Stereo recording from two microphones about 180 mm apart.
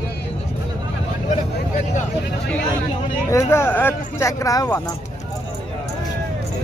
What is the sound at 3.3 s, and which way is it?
Speech, 15° left (ahead or behind).